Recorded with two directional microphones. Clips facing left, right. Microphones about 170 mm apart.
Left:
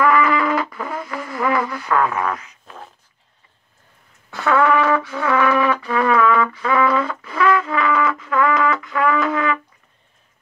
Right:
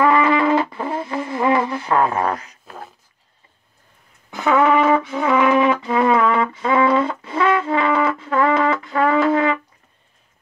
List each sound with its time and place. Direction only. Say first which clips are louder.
0.0 s music: right 1 dB; 25° right (ahead or behind)
4.3 s brass instrument: right 1 dB; 15° right (ahead or behind)